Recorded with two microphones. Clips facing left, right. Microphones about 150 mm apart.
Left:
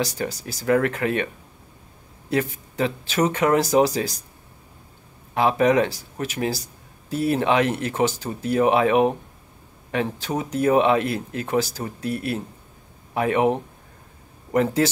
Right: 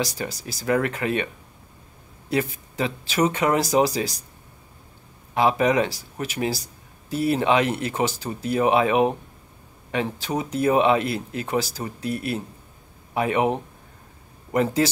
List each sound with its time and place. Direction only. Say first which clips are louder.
0.0 s speech: left 2 dB; 10° right (ahead or behind)
5.3 s speech: left 1 dB; 15° right (ahead or behind)
14.5 s speech: left 1 dB; 10° right (ahead or behind)